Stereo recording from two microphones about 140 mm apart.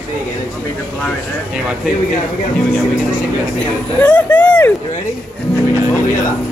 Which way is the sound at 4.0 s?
10° left (ahead or behind).